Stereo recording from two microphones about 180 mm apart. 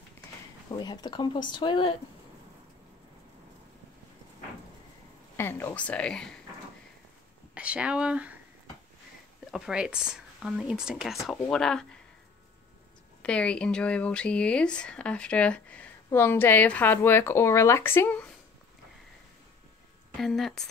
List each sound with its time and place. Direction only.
0.7 s speech: 25° left (ahead or behind)
5.4 s speech: 10° left (ahead or behind)
7.5 s speech: 5° right (ahead or behind)
9.5 s speech: 5° right (ahead or behind)
13.2 s speech: 5° left (ahead or behind)
20.2 s speech: centre (ahead or behind)